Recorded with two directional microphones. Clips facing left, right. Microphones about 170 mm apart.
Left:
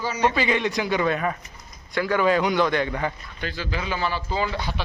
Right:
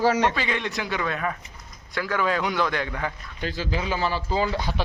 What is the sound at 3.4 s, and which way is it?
A man's voice, 40° right (ahead or behind).